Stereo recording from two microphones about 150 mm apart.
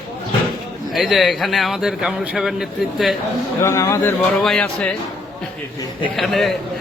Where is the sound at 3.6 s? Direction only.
20° left (ahead or behind).